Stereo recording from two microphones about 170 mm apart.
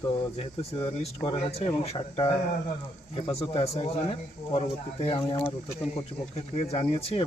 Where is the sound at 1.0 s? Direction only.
40° left (ahead or behind).